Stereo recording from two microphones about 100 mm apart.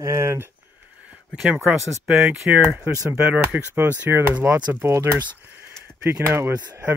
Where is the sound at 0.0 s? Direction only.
30° right (ahead or behind).